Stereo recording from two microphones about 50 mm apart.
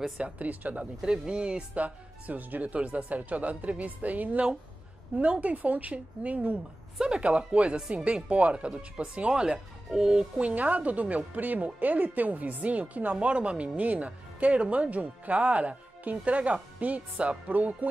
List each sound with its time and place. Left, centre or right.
0.2 s speech: right
1.0 s a woman's voice: centre
7.0 s a woman's voice: centre
9.3 s speech: centre
10.5 s a woman's voice: right